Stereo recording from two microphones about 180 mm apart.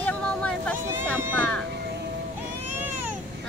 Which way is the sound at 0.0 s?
5° left (ahead or behind).